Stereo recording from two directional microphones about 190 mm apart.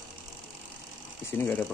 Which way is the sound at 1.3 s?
10° left (ahead or behind).